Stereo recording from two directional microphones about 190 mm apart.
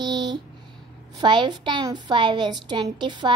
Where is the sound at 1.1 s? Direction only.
25° right (ahead or behind).